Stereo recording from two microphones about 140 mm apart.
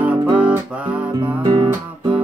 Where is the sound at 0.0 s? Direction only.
10° right (ahead or behind).